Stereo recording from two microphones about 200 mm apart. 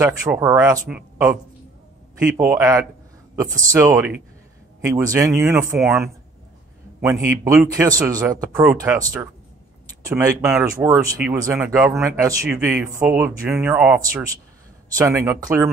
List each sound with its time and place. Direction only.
0.0 s a man's voice: 10° right (ahead or behind)
3.8 s a man's voice: 10° right (ahead or behind)